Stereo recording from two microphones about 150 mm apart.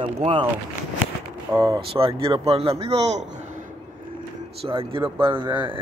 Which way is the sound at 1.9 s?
35° right (ahead or behind).